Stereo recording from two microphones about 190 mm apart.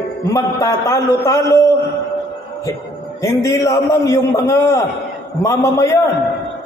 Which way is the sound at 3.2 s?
15° left (ahead or behind).